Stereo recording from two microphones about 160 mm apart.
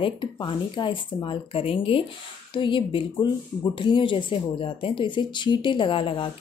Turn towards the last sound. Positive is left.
turn(degrees=35)  # may be behind; listen again after turning